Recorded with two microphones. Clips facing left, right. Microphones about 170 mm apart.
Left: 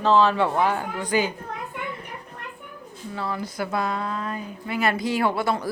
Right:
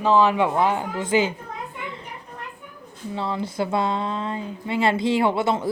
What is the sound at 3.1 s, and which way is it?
Speech, 25° right (ahead or behind).